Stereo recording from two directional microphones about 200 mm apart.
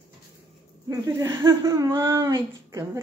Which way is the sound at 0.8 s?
15° right (ahead or behind).